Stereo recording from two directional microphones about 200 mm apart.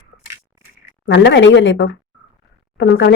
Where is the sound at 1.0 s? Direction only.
60° left (ahead or behind).